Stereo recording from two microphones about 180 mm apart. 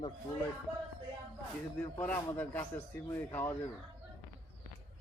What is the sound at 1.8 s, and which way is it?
A man's voice, 10° left (ahead or behind).